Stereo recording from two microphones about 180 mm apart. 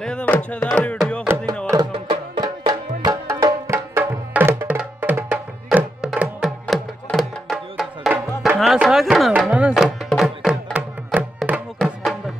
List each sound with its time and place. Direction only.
0.0 s music: 5° left (ahead or behind)
1.2 s music: 15° right (ahead or behind); by 12.2 s centre (ahead or behind)